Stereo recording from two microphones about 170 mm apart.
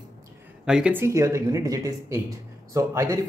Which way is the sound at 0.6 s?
5° right (ahead or behind).